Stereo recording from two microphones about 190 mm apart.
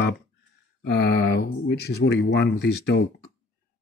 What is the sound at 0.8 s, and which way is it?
Speech, 60° left (ahead or behind).